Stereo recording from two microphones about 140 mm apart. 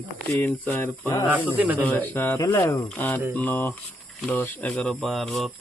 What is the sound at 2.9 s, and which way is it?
Speech, 15° left (ahead or behind).